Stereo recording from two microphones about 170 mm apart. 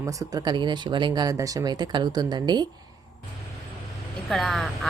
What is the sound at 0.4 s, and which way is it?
Speech, 25° right (ahead or behind).